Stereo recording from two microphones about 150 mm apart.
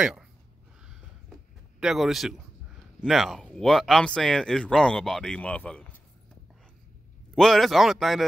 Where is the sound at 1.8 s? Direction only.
Centre (ahead or behind).